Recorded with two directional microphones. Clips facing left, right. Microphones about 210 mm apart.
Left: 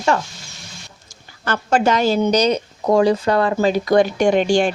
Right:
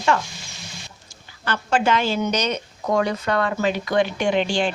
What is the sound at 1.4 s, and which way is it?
A woman's voice, 45° left (ahead or behind).